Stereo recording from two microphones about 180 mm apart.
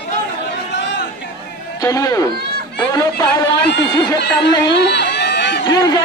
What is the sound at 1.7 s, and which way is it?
Speech, 20° left (ahead or behind).